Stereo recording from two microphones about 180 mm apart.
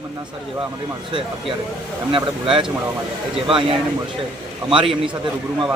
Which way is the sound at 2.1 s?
30° right (ahead or behind).